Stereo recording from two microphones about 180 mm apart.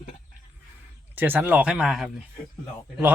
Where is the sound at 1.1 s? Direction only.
10° right (ahead or behind).